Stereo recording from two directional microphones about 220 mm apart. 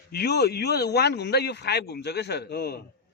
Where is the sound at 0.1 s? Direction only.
45° left (ahead or behind).